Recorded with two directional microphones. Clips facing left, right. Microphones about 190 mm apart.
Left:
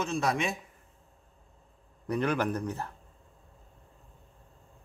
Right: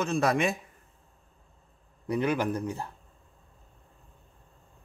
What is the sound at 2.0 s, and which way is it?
Speech, 10° right (ahead or behind).